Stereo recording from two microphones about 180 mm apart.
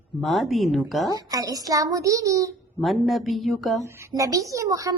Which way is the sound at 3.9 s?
15° right (ahead or behind).